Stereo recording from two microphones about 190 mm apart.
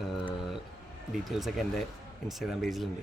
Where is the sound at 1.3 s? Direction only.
Centre (ahead or behind).